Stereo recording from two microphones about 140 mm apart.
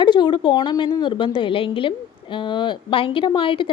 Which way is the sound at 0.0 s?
35° left (ahead or behind).